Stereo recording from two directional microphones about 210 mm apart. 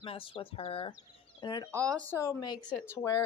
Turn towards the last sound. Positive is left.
turn(degrees=10)  # may be behind; listen again after turning